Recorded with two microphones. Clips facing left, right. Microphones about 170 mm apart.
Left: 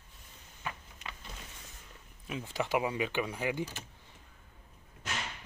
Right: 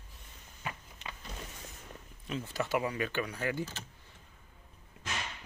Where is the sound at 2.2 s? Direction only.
15° left (ahead or behind).